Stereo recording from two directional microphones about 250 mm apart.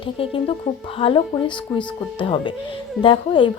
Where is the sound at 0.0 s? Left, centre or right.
Left.